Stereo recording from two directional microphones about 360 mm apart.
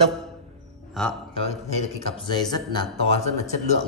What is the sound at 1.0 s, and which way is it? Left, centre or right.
Speech, centre.